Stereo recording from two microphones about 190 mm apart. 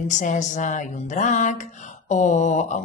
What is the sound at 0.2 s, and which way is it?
Speech, 40° left (ahead or behind).